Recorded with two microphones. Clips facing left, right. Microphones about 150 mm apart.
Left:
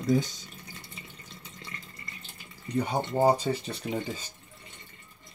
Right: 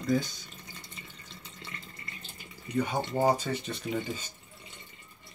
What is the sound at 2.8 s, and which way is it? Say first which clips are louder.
Speech: left 2 dB; 30° left (ahead or behind).